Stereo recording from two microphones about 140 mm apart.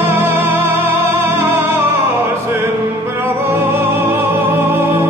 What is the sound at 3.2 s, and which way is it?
Music, 15° right (ahead or behind).